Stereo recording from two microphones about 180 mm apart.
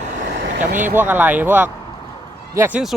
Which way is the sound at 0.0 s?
45° right (ahead or behind).